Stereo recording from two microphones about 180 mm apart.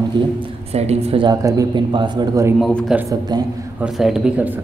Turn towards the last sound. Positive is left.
turn(degrees=-5)  # may be behind; listen again after turning